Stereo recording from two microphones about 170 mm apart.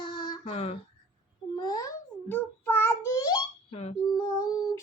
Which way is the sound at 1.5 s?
25° left (ahead or behind).